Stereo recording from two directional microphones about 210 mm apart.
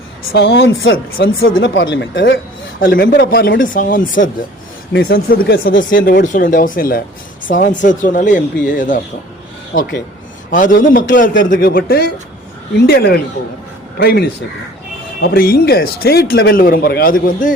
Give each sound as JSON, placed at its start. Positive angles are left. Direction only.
{"t": 0.3, "sound": "speech", "side_deg": 55}
{"t": 2.8, "sound": "a man's voice", "side_deg": 45}